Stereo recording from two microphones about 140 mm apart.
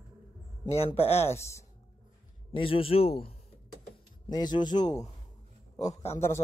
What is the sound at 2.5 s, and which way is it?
Speech, 40° left (ahead or behind).